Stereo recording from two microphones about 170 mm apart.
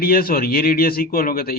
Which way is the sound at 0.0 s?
60° left (ahead or behind).